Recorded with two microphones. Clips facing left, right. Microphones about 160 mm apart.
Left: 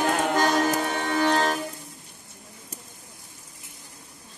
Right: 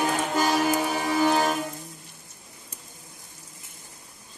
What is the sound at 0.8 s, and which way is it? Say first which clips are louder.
Music: right 1 dB; 5° right (ahead or behind).